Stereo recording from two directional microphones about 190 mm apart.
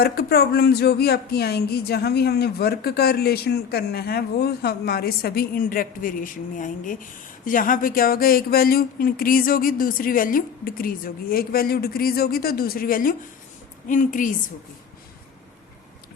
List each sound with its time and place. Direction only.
0.0 s speech: 55° left (ahead or behind)